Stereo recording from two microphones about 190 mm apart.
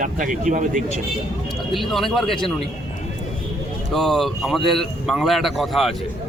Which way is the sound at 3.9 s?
Centre (ahead or behind).